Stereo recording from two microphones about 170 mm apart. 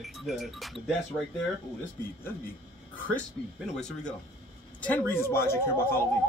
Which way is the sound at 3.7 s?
5° left (ahead or behind).